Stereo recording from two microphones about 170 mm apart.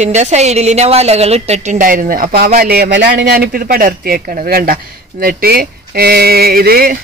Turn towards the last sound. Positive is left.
turn(degrees=-60)  # may be behind; listen again after turning